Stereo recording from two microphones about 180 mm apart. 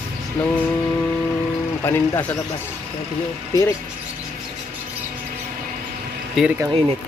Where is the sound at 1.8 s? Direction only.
10° left (ahead or behind).